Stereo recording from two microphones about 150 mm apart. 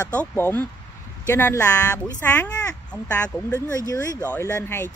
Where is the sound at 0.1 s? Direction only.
10° left (ahead or behind).